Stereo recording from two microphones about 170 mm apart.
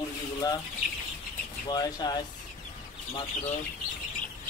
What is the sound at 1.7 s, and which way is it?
Speech, 25° left (ahead or behind).